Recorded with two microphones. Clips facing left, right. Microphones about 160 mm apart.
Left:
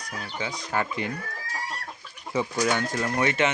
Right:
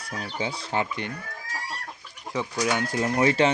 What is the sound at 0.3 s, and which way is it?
Speech, 25° right (ahead or behind).